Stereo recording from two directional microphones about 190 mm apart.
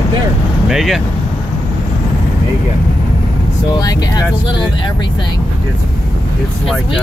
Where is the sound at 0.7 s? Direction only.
Centre (ahead or behind).